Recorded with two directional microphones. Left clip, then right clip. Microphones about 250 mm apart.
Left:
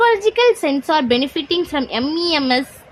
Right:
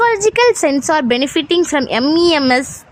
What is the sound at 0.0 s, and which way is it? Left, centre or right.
A woman's voice, right.